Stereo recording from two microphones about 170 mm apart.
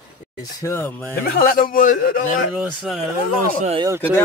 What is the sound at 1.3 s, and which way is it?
Speech, 60° left (ahead or behind).